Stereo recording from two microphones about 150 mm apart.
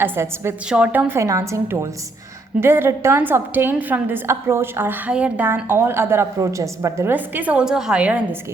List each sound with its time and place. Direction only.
0.0 s a woman's voice: 15° right (ahead or behind)